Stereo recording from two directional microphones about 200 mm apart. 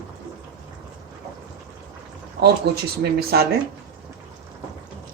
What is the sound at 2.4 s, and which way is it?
A woman's voice, 55° right (ahead or behind).